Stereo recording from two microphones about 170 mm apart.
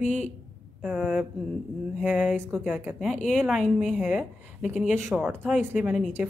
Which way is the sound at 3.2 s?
45° left (ahead or behind).